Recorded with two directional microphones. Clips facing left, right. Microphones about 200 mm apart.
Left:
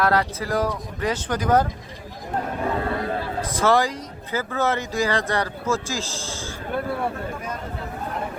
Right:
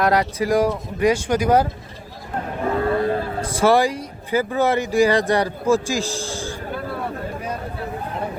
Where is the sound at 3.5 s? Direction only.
15° right (ahead or behind).